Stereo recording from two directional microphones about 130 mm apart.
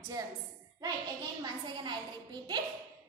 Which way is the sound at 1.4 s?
35° right (ahead or behind).